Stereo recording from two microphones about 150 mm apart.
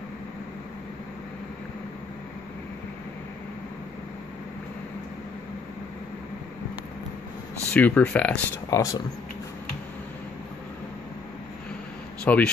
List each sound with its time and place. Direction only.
7.7 s speech: 10° left (ahead or behind)
8.6 s speech: 25° left (ahead or behind)
12.3 s speech: 10° left (ahead or behind)